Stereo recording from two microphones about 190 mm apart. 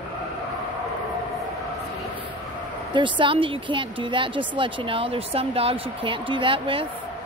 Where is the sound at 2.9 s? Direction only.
25° right (ahead or behind).